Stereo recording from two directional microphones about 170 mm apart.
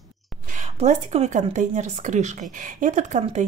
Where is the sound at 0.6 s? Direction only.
40° right (ahead or behind).